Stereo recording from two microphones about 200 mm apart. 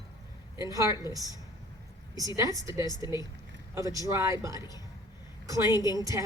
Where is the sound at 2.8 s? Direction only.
20° left (ahead or behind).